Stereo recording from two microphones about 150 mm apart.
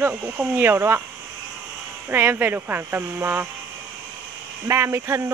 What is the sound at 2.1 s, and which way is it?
Speech, 15° right (ahead or behind).